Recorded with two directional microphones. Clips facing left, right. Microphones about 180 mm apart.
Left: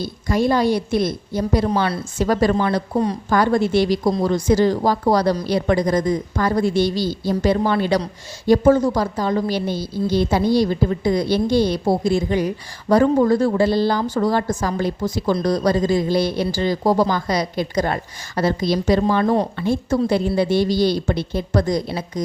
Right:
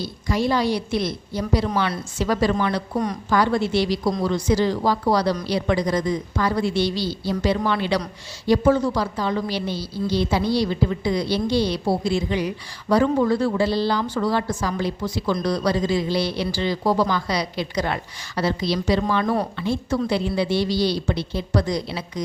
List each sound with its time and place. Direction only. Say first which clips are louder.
0.0 s a woman's voice: left 4 dB; 50° left (ahead or behind); by 3.2 s 35° left (ahead or behind)
3.2 s a woman's voice: left 2 dB; 45° left (ahead or behind)
19.0 s speech: left 4 dB; 35° left (ahead or behind)
19.5 s a woman's voice: left 4 dB; 45° left (ahead or behind)